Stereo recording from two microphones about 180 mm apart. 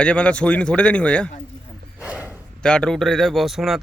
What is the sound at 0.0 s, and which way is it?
A man's voice, 5° left (ahead or behind).